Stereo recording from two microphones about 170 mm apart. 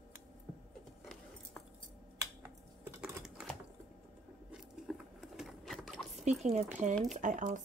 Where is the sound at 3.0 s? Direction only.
5° right (ahead or behind).